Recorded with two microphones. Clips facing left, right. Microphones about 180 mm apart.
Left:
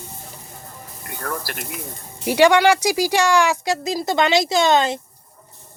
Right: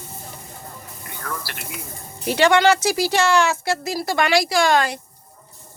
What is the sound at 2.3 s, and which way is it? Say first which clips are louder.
Speech: left 2 dB; 10° left (ahead or behind).